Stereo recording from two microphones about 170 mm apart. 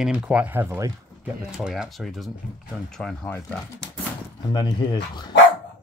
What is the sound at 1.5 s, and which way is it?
Speech, centre (ahead or behind).